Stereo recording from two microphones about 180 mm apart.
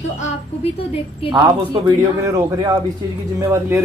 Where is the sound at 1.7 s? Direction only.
20° right (ahead or behind).